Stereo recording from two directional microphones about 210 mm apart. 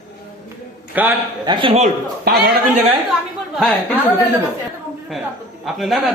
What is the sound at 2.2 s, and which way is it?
Speech, 45° right (ahead or behind).